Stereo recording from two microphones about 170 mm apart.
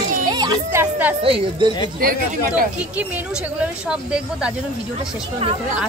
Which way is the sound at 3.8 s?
5° right (ahead or behind).